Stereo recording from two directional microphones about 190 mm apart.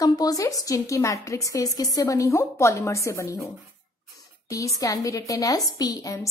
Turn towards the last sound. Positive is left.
turn(degrees=20)  # may be behind; listen again after turning